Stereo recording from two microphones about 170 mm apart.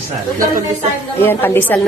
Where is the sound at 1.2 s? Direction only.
10° left (ahead or behind).